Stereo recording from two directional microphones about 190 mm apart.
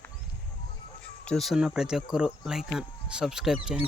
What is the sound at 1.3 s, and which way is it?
Speech, centre (ahead or behind).